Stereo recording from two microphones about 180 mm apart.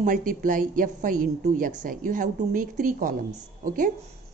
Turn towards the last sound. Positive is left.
turn(degrees=-50)  # may be behind; listen again after turning